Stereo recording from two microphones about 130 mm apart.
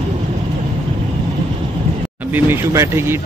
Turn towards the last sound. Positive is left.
turn(degrees=-20)  # may be behind; listen again after turning